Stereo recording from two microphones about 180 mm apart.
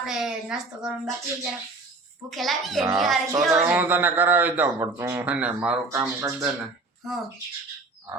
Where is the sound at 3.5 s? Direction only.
10° right (ahead or behind).